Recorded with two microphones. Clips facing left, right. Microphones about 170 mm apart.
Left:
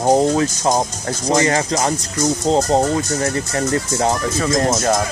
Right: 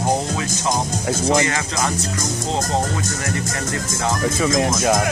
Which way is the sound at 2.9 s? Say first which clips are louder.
Left 5 dB; 30° left (ahead or behind).